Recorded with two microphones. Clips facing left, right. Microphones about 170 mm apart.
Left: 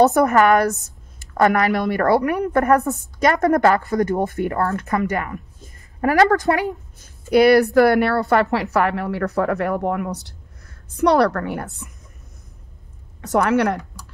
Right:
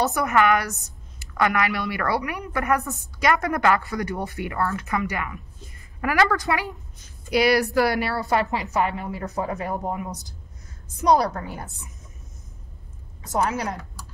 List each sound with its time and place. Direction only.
0.0 s a woman's voice: 45° left (ahead or behind); by 11.9 s 70° left (ahead or behind)
13.2 s a woman's voice: 70° left (ahead or behind)